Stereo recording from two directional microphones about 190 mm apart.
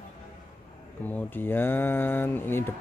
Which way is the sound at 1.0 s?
10° left (ahead or behind).